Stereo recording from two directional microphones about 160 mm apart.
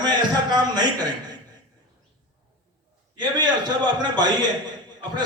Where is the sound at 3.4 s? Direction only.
25° right (ahead or behind).